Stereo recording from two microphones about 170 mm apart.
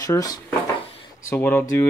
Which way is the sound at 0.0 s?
20° left (ahead or behind).